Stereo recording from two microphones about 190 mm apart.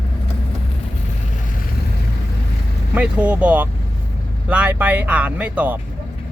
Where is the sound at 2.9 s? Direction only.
10° right (ahead or behind).